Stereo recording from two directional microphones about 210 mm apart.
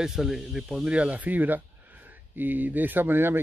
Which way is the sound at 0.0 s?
Centre (ahead or behind).